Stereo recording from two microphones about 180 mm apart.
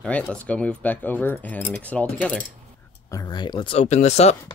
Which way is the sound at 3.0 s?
20° left (ahead or behind).